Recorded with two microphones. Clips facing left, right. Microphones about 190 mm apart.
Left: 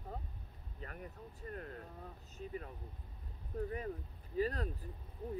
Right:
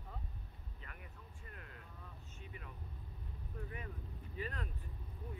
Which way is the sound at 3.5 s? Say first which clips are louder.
Left 10 dB; 35° left (ahead or behind).